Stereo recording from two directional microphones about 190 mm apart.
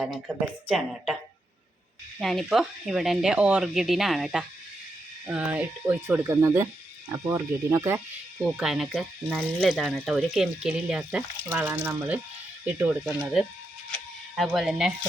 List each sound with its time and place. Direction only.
0.0 s speech: centre (ahead or behind)
2.1 s speech: centre (ahead or behind)
8.4 s speech: centre (ahead or behind)